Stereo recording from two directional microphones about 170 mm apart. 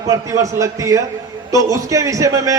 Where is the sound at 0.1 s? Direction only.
20° right (ahead or behind).